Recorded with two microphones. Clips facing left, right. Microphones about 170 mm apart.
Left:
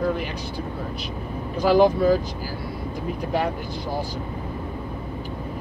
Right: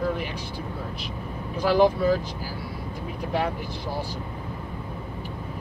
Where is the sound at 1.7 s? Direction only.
Centre (ahead or behind).